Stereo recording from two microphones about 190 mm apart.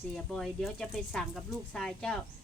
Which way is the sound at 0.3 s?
Centre (ahead or behind).